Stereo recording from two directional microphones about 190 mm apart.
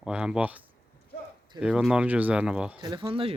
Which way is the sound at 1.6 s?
5° right (ahead or behind).